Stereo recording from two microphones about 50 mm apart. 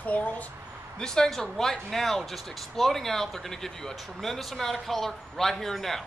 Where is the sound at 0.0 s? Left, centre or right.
Left.